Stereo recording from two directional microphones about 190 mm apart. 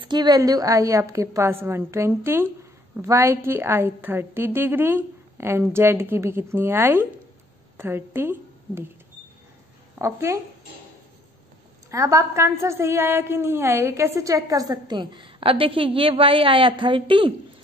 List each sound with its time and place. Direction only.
0.0 s a woman's voice: 25° right (ahead or behind)
9.9 s a woman's voice: 15° right (ahead or behind)
11.9 s a woman's voice: 15° right (ahead or behind)